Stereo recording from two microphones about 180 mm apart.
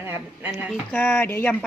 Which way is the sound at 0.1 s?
10° right (ahead or behind).